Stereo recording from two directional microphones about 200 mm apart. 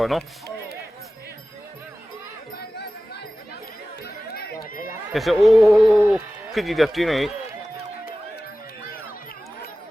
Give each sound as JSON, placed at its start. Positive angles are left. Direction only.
{"t": 0.0, "sound": "speech", "side_deg": 0}
{"t": 4.0, "sound": "run", "side_deg": 55}
{"t": 5.1, "sound": "speech", "side_deg": 0}